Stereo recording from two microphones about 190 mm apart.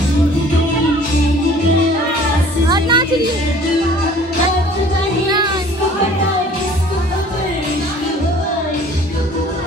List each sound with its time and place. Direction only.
2.7 s music: 20° right (ahead or behind)